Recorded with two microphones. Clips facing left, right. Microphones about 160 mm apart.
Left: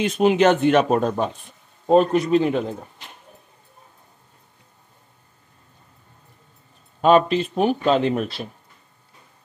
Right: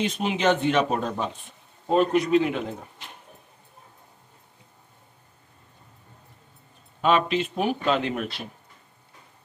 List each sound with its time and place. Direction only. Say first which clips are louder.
0.0 s speech: left 7 dB; 50° left (ahead or behind)
1.9 s speech: left 4 dB; 40° left (ahead or behind)
7.0 s speech: left 6 dB; 40° left (ahead or behind)